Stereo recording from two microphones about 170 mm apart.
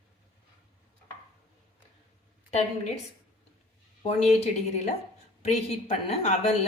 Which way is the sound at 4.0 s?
35° left (ahead or behind).